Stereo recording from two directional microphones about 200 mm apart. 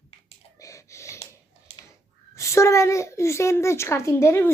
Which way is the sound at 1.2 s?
30° left (ahead or behind).